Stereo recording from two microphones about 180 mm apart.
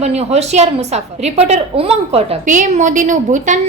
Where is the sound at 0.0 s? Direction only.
35° right (ahead or behind).